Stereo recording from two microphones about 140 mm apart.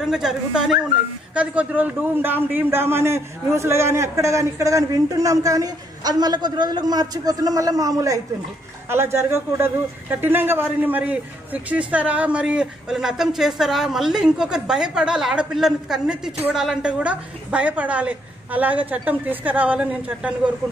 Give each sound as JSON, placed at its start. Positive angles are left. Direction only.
{"t": 0.0, "sound": "a woman's voice", "side_deg": -5}